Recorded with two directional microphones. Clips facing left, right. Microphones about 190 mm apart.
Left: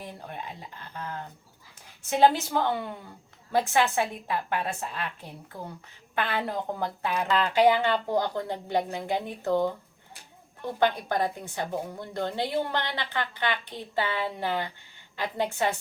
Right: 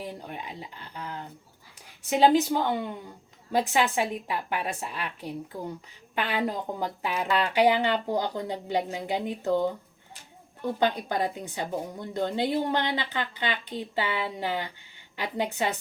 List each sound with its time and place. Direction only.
2.0 s a woman's voice: 15° right (ahead or behind)
10.8 s a woman's voice: 15° right (ahead or behind)